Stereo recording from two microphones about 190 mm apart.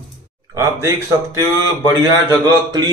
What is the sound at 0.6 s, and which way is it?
Speech, 15° right (ahead or behind).